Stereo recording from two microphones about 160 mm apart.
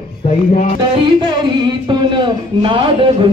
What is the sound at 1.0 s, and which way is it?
Speech, 30° right (ahead or behind).